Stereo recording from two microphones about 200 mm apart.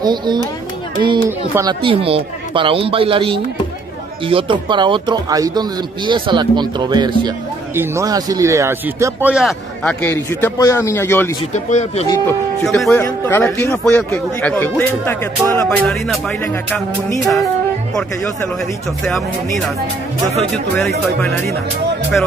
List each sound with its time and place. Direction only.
0.0 s a man's voice: 20° right (ahead or behind); by 9.9 s centre (ahead or behind)
10.0 s speech: 10° left (ahead or behind)
11.5 s speech: 35° left (ahead or behind)
12.6 s music: centre (ahead or behind)
13.4 s speech: 5° left (ahead or behind)
15.6 s music: centre (ahead or behind)